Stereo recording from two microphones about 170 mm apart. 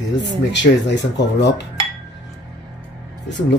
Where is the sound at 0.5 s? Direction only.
90° left.